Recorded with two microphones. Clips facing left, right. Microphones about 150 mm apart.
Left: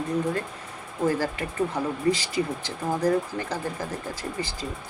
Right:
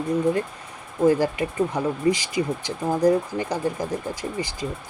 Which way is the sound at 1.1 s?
15° right (ahead or behind).